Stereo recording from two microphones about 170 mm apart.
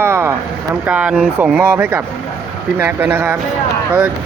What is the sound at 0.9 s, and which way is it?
Speech, 10° right (ahead or behind).